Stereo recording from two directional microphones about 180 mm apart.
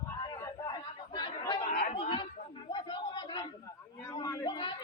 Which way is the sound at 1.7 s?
55° left (ahead or behind).